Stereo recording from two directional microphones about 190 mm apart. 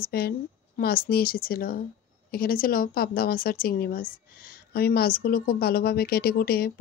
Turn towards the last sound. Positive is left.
turn(degrees=50)  # may be behind; listen again after turning